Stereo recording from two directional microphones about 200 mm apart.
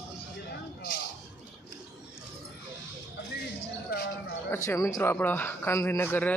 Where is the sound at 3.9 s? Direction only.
50° left (ahead or behind).